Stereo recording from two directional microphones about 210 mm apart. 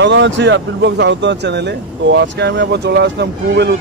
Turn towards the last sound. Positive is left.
turn(degrees=-55)  # may be behind; listen again after turning